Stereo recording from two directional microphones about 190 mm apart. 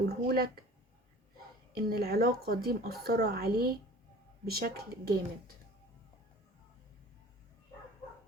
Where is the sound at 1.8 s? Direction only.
55° right (ahead or behind).